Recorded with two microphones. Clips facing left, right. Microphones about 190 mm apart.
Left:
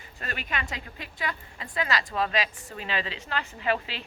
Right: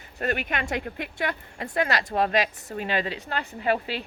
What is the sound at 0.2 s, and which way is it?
Speech, 55° right (ahead or behind).